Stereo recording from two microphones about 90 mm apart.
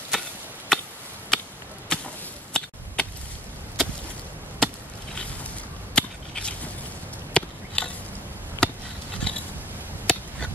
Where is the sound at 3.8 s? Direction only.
5° left (ahead or behind).